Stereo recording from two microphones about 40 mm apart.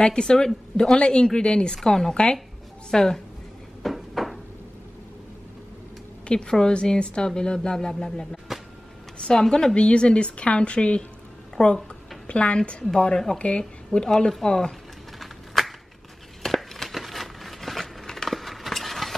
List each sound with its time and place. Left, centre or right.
0.0 s speech: left
1.9 s a woman's voice: centre
3.8 s a sound: centre
6.2 s a woman's voice: left
14.4 s a woman's voice: centre
15.1 s a sound: centre